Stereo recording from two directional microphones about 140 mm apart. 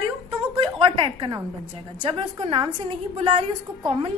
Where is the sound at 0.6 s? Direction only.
40° right (ahead or behind).